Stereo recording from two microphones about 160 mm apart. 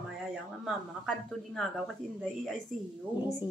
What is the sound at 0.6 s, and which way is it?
A woman's voice, centre (ahead or behind).